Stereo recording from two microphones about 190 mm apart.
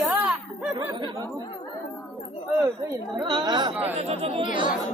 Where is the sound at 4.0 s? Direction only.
30° right (ahead or behind).